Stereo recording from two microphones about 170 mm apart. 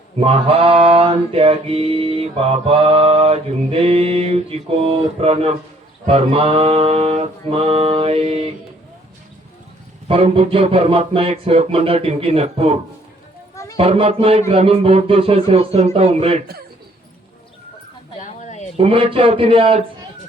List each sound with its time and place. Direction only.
0.2 s mantra: 30° right (ahead or behind)
10.1 s mantra: 35° right (ahead or behind)
18.2 s a sound: 45° left (ahead or behind)
18.8 s mantra: 35° right (ahead or behind)